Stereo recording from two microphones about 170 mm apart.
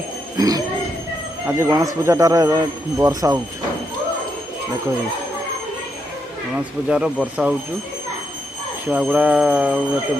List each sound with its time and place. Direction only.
0.3 s a man's voice: 20° right (ahead or behind)
6.6 s speech: 5° right (ahead or behind)
8.9 s speech: 10° right (ahead or behind)